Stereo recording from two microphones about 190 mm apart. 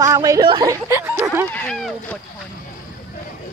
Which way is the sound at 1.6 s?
5° left (ahead or behind).